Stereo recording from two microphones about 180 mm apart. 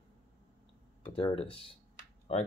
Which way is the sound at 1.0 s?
30° left (ahead or behind).